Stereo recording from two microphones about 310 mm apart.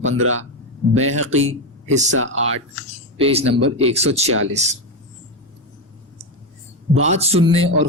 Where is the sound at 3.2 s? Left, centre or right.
Centre.